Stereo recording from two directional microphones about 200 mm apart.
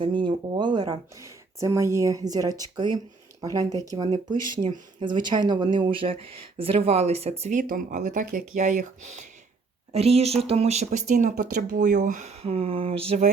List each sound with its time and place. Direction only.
0.0 s speech: 25° right (ahead or behind)